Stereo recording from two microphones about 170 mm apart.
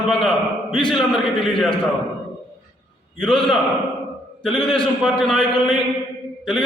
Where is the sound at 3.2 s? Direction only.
Centre (ahead or behind).